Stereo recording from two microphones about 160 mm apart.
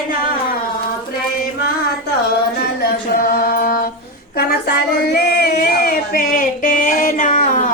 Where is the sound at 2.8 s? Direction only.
70° left (ahead or behind).